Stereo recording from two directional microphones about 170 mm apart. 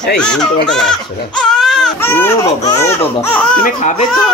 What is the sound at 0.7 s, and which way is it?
Baby cry, 5° left (ahead or behind).